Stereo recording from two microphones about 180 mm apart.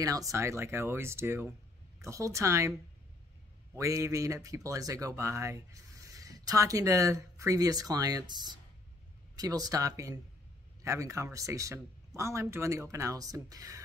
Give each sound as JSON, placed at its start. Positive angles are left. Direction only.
{"t": 0.0, "sound": "speech", "side_deg": -20}
{"t": 3.7, "sound": "speech", "side_deg": -15}